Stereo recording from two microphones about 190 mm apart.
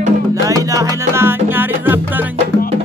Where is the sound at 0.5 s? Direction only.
15° right (ahead or behind).